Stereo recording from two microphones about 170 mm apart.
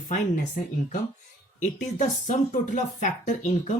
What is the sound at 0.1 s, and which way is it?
Speech, 50° left (ahead or behind).